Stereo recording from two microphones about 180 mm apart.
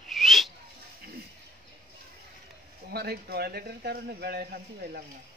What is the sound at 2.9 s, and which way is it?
Speech, 60° right (ahead or behind).